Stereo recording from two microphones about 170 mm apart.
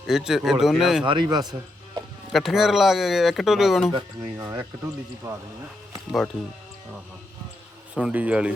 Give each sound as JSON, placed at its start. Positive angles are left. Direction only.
{"t": 0.0, "sound": "speech", "side_deg": -5}
{"t": 1.0, "sound": "speech", "side_deg": -25}
{"t": 2.3, "sound": "speech", "side_deg": 0}
{"t": 3.9, "sound": "speech", "side_deg": -20}
{"t": 6.1, "sound": "speech", "side_deg": 0}
{"t": 7.9, "sound": "speech", "side_deg": -10}